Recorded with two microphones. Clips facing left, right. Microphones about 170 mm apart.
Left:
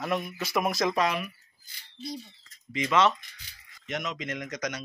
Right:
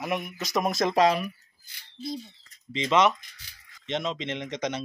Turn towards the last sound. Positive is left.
turn(degrees=-25)  # may be behind; listen again after turning